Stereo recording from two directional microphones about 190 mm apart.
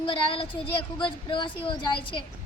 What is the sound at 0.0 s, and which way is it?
A woman's voice, 25° left (ahead or behind).